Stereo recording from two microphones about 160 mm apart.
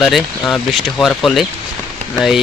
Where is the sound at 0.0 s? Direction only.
Centre (ahead or behind).